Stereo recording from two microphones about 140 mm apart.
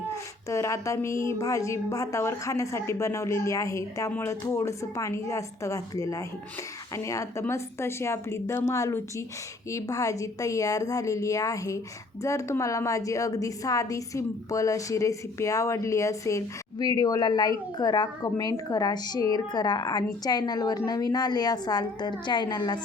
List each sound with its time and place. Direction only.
0.4 s a woman's voice: 20° left (ahead or behind)